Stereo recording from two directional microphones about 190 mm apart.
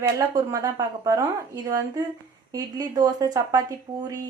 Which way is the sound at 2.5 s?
20° right (ahead or behind).